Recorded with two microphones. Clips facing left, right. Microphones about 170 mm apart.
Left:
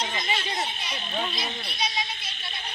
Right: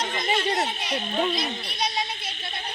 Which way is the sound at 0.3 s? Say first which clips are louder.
Right 6 dB; 60° right (ahead or behind).